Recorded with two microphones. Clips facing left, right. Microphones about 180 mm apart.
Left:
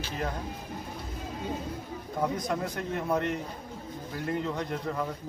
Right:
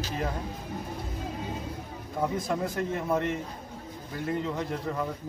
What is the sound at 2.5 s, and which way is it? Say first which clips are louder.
A man's voice: right 2 dB; centre (ahead or behind).